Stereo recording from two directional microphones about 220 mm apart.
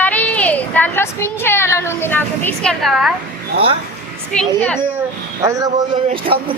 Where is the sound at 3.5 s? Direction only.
25° right (ahead or behind).